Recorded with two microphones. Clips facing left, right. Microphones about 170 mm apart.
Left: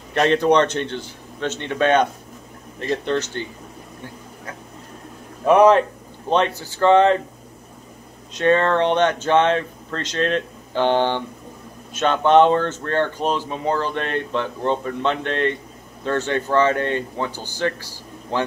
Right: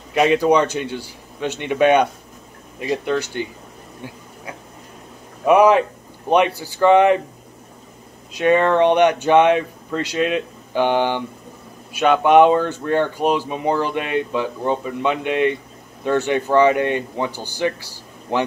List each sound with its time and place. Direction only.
0.1 s speech: 10° right (ahead or behind)
5.4 s speech: 5° right (ahead or behind)
8.4 s speech: 15° right (ahead or behind)